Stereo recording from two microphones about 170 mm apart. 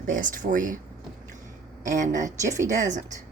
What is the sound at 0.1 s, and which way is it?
Speech, 50° right (ahead or behind).